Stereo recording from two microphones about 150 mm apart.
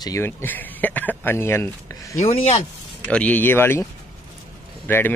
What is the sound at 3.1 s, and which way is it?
Speech, 10° left (ahead or behind).